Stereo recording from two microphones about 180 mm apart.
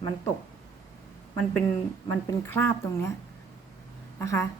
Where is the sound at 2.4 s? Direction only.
15° left (ahead or behind).